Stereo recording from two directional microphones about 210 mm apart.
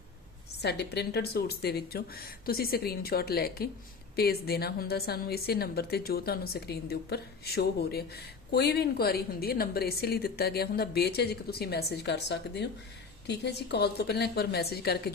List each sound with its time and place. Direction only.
0.6 s a woman's voice: 50° left (ahead or behind)